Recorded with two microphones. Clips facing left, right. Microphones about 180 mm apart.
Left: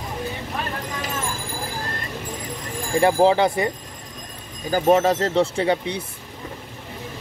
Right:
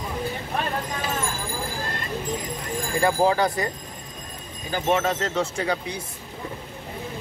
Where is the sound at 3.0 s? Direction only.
25° left (ahead or behind).